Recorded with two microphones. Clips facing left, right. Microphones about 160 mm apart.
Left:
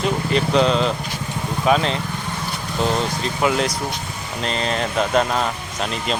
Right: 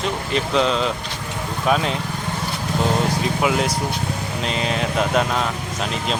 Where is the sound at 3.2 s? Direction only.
5° right (ahead or behind).